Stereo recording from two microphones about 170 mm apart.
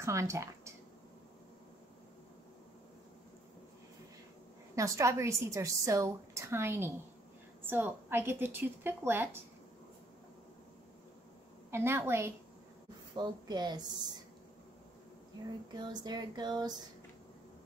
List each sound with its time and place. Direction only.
0.0 s a woman's voice: 15° right (ahead or behind)
4.7 s a woman's voice: 20° right (ahead or behind)
11.7 s a woman's voice: 15° right (ahead or behind)
13.1 s speech: 25° right (ahead or behind)
15.9 s speech: 25° right (ahead or behind)